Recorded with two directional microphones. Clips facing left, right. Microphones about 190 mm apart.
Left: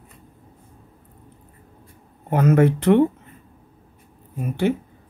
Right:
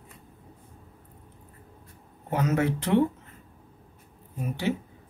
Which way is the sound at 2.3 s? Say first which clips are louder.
Left 8 dB; 55° left (ahead or behind).